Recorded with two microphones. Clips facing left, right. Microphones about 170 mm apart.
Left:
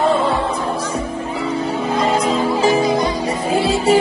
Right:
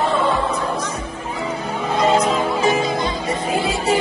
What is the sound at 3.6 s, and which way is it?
Music, 30° left (ahead or behind).